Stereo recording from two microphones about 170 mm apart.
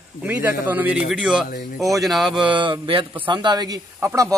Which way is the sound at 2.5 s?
30° right (ahead or behind).